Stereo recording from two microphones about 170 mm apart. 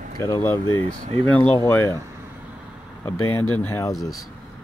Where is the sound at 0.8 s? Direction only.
45° right (ahead or behind).